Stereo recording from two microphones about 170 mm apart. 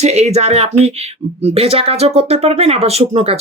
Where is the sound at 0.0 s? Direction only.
40° right (ahead or behind).